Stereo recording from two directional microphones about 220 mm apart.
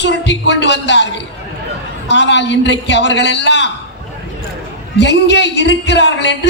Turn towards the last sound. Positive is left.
turn(degrees=55)  # may be behind; listen again after turning